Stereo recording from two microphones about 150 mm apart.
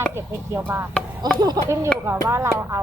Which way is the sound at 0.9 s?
5° left (ahead or behind).